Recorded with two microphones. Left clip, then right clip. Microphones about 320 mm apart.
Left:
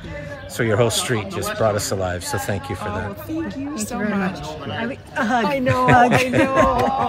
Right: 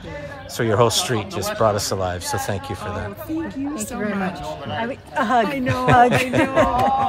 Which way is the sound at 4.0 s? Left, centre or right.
Right.